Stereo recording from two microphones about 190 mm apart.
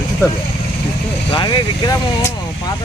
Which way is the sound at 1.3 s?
20° left (ahead or behind).